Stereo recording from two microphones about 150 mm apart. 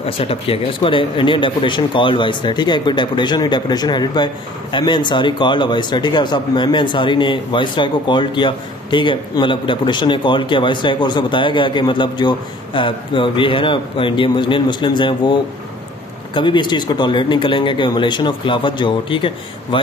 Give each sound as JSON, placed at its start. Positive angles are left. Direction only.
{"t": 0.0, "sound": "speech", "side_deg": 40}
{"t": 16.3, "sound": "speech", "side_deg": 30}